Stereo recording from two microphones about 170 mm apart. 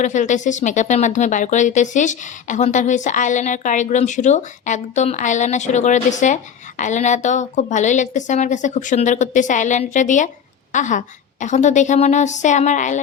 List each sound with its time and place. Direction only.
0.0 s speech: 45° left (ahead or behind)